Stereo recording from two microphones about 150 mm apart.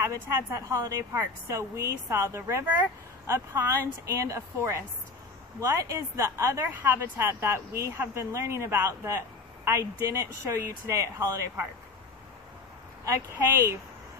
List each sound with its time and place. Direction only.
0.0 s speech: 20° right (ahead or behind)
13.0 s speech: 20° right (ahead or behind)